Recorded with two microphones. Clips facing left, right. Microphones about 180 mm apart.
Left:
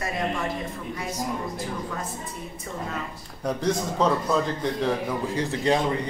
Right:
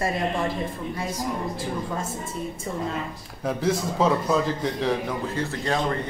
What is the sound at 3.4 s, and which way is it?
A man's voice, 5° right (ahead or behind).